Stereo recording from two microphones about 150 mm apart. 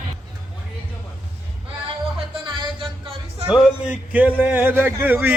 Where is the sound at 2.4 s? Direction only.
30° right (ahead or behind).